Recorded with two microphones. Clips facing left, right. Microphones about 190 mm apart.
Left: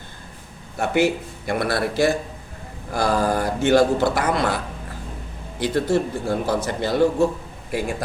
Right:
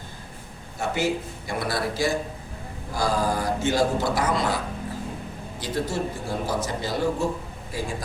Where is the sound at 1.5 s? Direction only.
60° left (ahead or behind).